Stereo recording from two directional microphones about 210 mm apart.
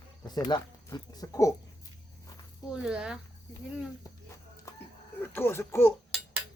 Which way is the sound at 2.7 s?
5° right (ahead or behind).